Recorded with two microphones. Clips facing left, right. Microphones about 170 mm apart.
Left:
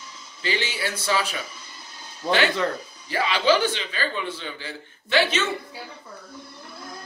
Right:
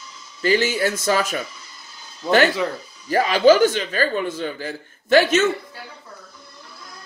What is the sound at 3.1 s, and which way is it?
Speech, 45° right (ahead or behind).